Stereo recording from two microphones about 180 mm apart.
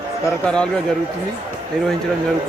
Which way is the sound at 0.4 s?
5° left (ahead or behind).